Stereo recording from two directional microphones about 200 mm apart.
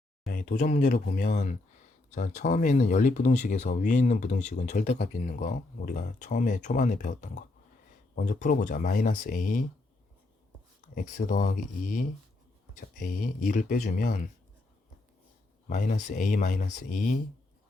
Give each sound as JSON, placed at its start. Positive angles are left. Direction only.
{"t": 0.3, "sound": "speech", "side_deg": 40}
{"t": 4.9, "sound": "speech", "side_deg": 50}
{"t": 10.9, "sound": "speech", "side_deg": 40}
{"t": 15.7, "sound": "speech", "side_deg": 40}